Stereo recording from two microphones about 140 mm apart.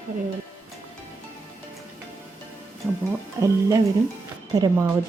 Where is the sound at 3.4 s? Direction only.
20° right (ahead or behind).